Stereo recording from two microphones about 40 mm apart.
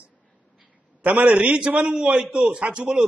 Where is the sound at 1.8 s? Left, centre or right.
Right.